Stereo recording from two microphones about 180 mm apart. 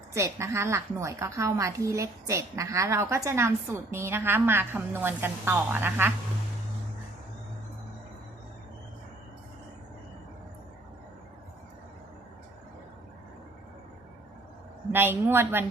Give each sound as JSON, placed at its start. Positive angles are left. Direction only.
{"t": 0.1, "sound": "a woman's voice", "side_deg": -15}
{"t": 14.9, "sound": "a woman's voice", "side_deg": -10}